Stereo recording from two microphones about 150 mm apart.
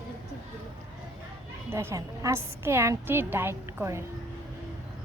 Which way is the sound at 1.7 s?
20° right (ahead or behind).